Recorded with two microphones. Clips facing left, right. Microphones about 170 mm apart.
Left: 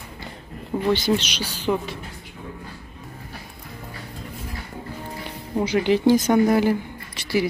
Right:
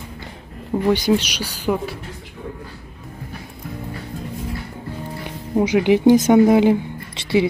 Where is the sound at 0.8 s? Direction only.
15° right (ahead or behind).